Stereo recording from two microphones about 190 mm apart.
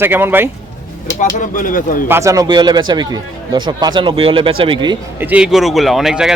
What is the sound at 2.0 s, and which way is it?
Speech, 15° right (ahead or behind).